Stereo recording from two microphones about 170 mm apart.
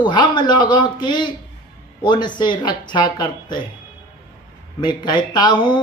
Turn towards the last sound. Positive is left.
turn(degrees=25)  # may be behind; listen again after turning